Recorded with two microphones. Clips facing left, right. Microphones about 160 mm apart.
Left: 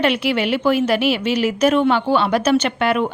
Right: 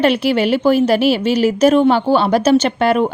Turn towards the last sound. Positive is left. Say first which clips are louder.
# right 4 dB
turn(degrees=-35)  # may be behind; listen again after turning